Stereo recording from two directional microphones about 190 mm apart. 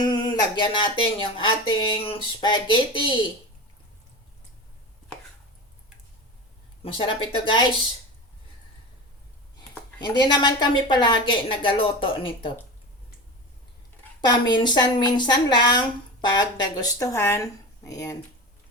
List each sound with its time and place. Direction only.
0.0 s speech: 20° left (ahead or behind)
6.8 s speech: 25° left (ahead or behind)
9.6 s speech: 20° left (ahead or behind)
14.2 s speech: 20° left (ahead or behind)